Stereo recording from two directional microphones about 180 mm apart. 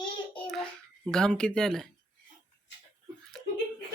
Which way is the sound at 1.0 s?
5° left (ahead or behind).